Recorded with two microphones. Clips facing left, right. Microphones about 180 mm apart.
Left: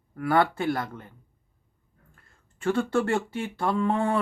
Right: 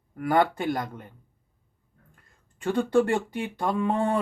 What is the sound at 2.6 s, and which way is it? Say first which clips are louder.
Speech: right 2 dB; 15° right (ahead or behind).